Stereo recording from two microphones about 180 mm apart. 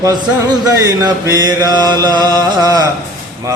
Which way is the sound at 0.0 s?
20° right (ahead or behind).